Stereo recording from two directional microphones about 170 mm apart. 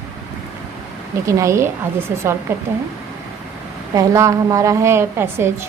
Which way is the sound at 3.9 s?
20° right (ahead or behind).